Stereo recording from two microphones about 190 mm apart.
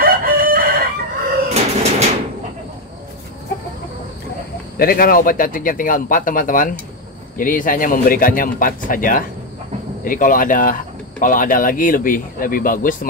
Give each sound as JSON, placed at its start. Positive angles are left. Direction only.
{"t": 0.0, "sound": "crowing", "side_deg": -50}
{"t": 1.5, "sound": "bird", "side_deg": -35}
{"t": 4.7, "sound": "speech", "side_deg": 50}